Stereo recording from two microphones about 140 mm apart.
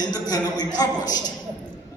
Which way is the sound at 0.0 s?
30° left (ahead or behind).